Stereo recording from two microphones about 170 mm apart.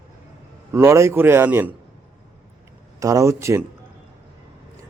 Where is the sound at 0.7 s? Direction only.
15° right (ahead or behind).